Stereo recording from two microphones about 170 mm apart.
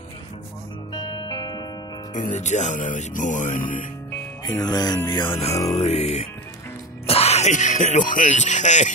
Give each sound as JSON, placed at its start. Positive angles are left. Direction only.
{"t": 0.9, "sound": "music", "side_deg": 25}
{"t": 2.1, "sound": "speech", "side_deg": 45}
{"t": 4.5, "sound": "music", "side_deg": 25}
{"t": 5.8, "sound": "speech", "side_deg": 40}